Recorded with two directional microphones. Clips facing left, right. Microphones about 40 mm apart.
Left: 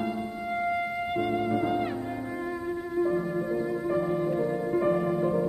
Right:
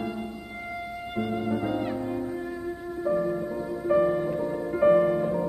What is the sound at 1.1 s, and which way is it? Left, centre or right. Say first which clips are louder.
Music: right 1 dB; centre.